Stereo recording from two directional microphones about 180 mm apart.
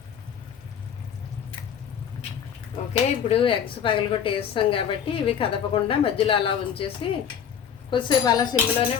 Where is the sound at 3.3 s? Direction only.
30° left (ahead or behind).